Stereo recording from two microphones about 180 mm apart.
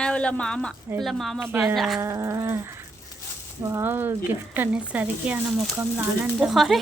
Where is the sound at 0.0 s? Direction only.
5° left (ahead or behind).